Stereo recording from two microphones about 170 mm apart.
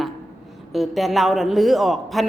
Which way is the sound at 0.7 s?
Centre (ahead or behind).